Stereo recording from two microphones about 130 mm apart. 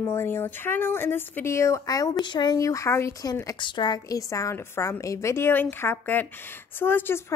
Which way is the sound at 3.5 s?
35° left (ahead or behind).